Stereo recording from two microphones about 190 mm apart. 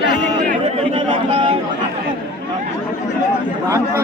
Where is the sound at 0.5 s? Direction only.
35° right (ahead or behind).